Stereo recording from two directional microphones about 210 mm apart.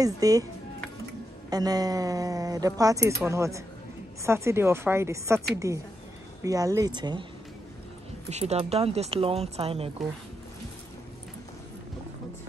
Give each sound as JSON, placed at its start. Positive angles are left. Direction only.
{"t": 0.0, "sound": "speech", "side_deg": -15}
{"t": 1.5, "sound": "speech", "side_deg": -20}
{"t": 8.3, "sound": "speech", "side_deg": -30}